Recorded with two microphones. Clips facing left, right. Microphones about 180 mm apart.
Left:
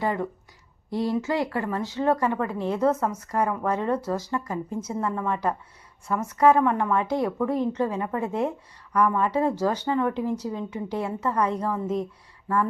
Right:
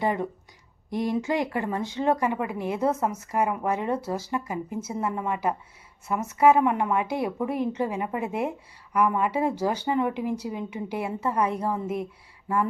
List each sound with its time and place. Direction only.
0.0 s a woman's voice: 20° right (ahead or behind)